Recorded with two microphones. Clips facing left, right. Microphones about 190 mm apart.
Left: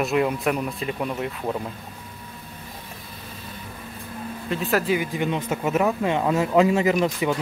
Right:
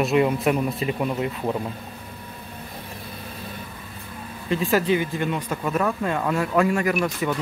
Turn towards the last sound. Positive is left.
turn(degrees=20)  # may be behind; listen again after turning